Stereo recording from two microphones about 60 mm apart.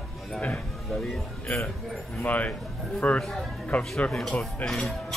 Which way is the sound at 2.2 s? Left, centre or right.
Left.